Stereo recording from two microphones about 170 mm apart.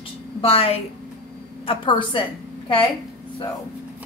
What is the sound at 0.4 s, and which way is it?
A woman's voice, 35° left (ahead or behind).